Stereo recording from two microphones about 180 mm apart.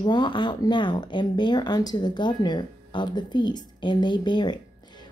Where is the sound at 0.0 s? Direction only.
25° left (ahead or behind).